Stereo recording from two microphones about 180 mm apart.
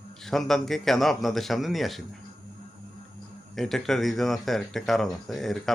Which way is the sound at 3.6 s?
Centre (ahead or behind).